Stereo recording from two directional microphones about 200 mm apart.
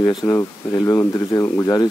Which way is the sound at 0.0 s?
20° left (ahead or behind).